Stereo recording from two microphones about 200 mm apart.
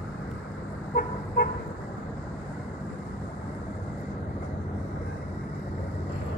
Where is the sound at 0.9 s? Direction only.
50° left (ahead or behind).